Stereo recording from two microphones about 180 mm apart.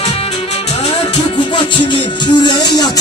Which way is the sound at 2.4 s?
25° left (ahead or behind).